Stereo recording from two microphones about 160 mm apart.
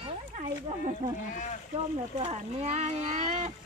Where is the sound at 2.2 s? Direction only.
40° right (ahead or behind).